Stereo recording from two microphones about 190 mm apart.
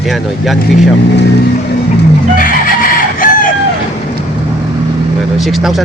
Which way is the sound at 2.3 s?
45° left (ahead or behind).